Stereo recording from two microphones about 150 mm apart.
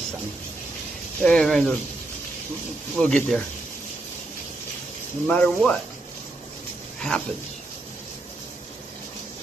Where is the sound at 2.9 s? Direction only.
5° left (ahead or behind).